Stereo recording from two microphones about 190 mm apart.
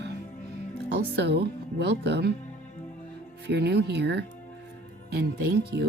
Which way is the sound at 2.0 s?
60° right (ahead or behind).